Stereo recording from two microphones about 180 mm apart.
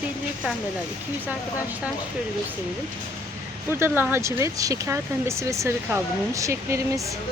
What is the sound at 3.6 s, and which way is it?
Speech, 10° right (ahead or behind).